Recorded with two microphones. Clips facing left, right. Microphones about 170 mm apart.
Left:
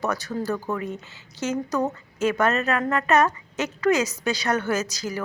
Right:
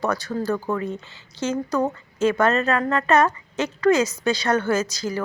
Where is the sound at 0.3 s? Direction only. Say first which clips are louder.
Right 2 dB; 15° left (ahead or behind).